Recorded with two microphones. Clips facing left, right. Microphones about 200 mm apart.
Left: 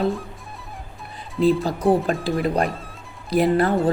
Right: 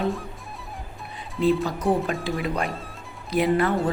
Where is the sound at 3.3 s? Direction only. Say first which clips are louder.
Left 3 dB; 35° left (ahead or behind).